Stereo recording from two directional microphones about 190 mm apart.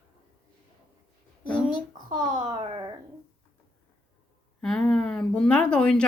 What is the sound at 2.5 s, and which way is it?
Speech, 25° right (ahead or behind).